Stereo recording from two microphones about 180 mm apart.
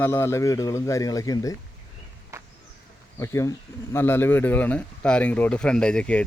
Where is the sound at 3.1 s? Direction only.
15° left (ahead or behind).